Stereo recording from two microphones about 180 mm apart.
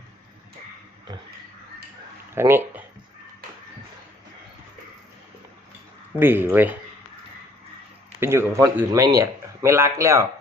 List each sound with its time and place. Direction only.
2.3 s speech: 15° right (ahead or behind)
6.1 s speech: 10° right (ahead or behind)
8.2 s speech: 15° right (ahead or behind)